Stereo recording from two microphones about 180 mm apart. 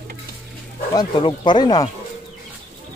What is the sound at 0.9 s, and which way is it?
Speech, 25° left (ahead or behind).